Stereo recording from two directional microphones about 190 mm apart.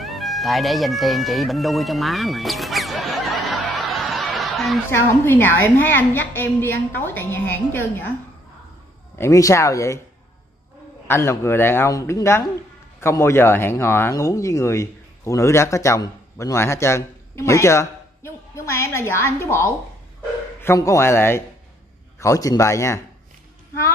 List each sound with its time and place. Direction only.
0.0 s music: centre (ahead or behind)
5.2 s speech: 10° left (ahead or behind)
9.2 s speech: 15° left (ahead or behind)
11.1 s speech: 15° left (ahead or behind)